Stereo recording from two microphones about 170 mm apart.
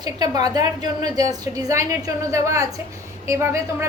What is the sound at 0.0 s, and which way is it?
A woman's voice, 20° right (ahead or behind).